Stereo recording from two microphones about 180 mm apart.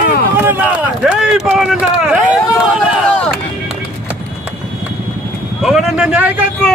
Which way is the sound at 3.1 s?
5° left (ahead or behind).